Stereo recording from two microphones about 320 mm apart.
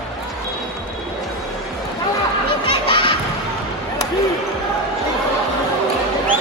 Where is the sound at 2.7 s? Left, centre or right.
Centre.